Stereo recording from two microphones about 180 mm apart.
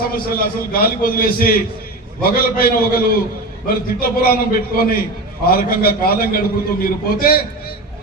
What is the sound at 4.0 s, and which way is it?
A man's voice, 55° left (ahead or behind).